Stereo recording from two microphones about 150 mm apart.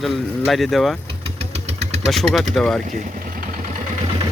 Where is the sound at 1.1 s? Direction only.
40° right (ahead or behind).